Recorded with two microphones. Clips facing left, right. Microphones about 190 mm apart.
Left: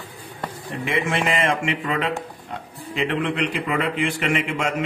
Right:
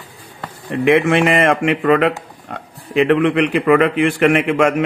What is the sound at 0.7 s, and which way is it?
A man's voice, 65° right (ahead or behind).